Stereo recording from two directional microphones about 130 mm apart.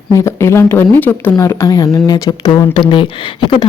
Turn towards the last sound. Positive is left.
turn(degrees=40)  # may be behind; listen again after turning